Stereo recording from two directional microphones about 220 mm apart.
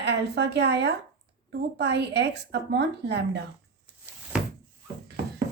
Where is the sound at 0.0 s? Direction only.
50° right (ahead or behind).